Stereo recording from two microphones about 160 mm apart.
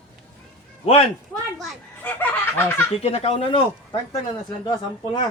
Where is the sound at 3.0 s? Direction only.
40° left (ahead or behind).